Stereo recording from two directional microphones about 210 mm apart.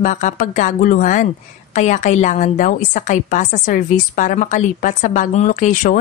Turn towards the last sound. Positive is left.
turn(degrees=40)  # may be behind; listen again after turning